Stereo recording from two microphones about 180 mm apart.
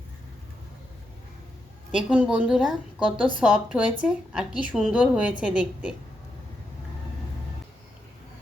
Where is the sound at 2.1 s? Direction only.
5° right (ahead or behind).